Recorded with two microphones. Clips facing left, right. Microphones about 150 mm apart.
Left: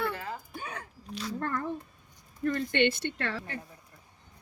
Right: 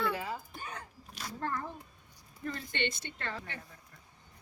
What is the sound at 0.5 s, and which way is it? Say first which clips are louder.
Hiccup: left 4 dB; 65° left (ahead or behind).